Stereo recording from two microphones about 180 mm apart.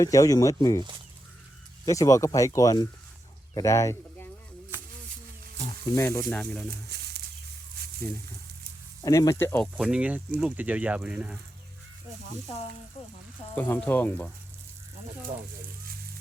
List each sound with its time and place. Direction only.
0.0 s speech: 20° left (ahead or behind)
5.9 s speech: 15° left (ahead or behind)
6.2 s speech: 5° left (ahead or behind)
6.8 s a sound: 65° right (ahead or behind)
9.0 s speech: 15° left (ahead or behind)
9.7 s speech: 5° right (ahead or behind)
13.6 s speech: 10° left (ahead or behind)